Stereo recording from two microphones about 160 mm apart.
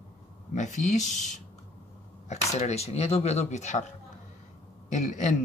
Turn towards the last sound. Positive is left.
turn(degrees=50)  # may be behind; listen again after turning